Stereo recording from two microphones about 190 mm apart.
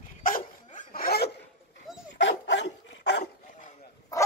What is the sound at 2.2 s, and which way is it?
Dog, 70° left (ahead or behind).